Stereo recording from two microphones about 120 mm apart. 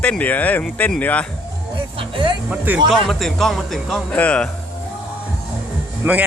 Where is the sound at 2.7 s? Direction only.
15° right (ahead or behind).